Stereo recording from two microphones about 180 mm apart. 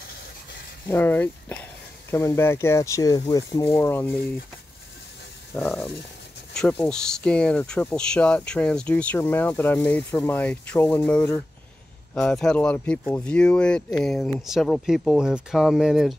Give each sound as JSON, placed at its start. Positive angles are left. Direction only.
{"t": 0.8, "sound": "speech", "side_deg": 10}
{"t": 5.6, "sound": "speech", "side_deg": 5}